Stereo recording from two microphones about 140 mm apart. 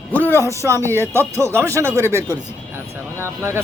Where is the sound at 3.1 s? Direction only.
20° right (ahead or behind).